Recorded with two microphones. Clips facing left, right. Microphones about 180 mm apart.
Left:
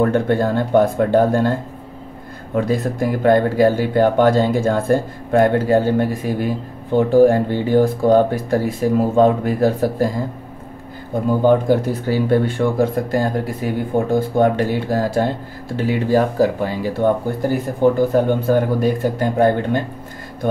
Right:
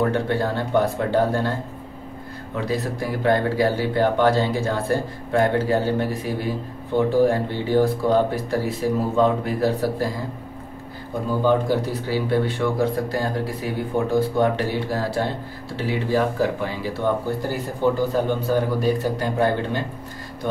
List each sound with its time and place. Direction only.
0.1 s speech: 50° left (ahead or behind)
2.5 s speech: 50° left (ahead or behind)
7.1 s speech: 50° left (ahead or behind)
11.4 s speech: 50° left (ahead or behind)